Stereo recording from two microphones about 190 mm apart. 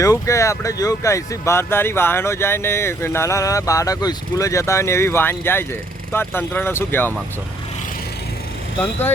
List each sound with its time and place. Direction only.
0.0 s speech: 15° left (ahead or behind)
8.8 s speech: 10° left (ahead or behind)